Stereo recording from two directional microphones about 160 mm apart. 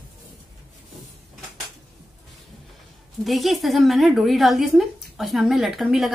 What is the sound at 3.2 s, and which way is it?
A woman's voice, centre (ahead or behind).